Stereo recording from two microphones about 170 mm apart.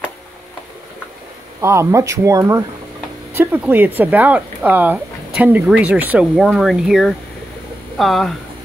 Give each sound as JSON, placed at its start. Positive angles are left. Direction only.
{"t": 1.6, "sound": "speech", "side_deg": -15}